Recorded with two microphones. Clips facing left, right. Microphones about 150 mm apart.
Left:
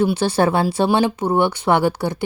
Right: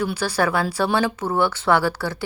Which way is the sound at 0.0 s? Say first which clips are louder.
Left 5 dB; 25° left (ahead or behind).